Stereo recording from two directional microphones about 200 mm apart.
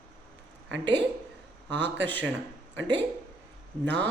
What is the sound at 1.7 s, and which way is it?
Speech, 60° right (ahead or behind).